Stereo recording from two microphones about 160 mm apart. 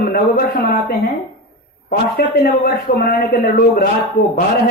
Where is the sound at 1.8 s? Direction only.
75° left (ahead or behind).